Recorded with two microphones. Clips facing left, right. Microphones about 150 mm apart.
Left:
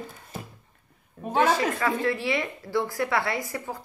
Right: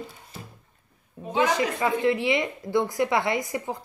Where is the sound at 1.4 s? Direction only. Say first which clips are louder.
Even; 20° right (ahead or behind).